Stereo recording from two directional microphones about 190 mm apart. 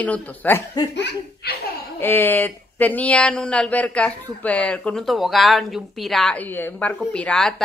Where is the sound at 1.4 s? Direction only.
60° left (ahead or behind).